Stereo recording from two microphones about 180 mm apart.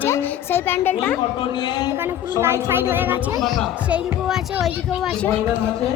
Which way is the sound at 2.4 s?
15° right (ahead or behind).